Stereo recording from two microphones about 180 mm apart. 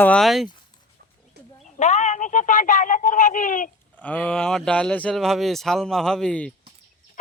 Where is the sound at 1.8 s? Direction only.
40° left (ahead or behind).